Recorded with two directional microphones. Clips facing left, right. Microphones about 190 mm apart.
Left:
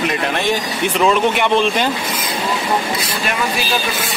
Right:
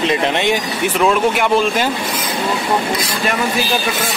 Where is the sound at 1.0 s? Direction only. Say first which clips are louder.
Even; centre (ahead or behind).